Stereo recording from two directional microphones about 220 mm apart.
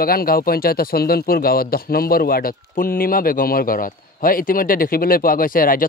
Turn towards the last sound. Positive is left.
turn(degrees=40)  # may be behind; listen again after turning